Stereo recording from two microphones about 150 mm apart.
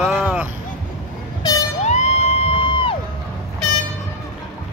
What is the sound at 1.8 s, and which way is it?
Music, 45° left (ahead or behind).